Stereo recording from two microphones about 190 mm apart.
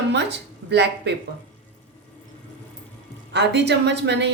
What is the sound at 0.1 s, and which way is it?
A woman's voice, 65° right (ahead or behind).